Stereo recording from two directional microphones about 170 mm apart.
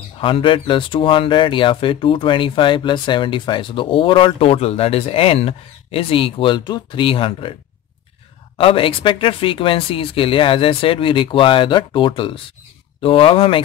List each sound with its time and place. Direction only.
0.2 s speech: 30° left (ahead or behind)
8.5 s speech: 30° left (ahead or behind)